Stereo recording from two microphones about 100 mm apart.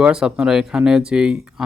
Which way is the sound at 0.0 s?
10° right (ahead or behind).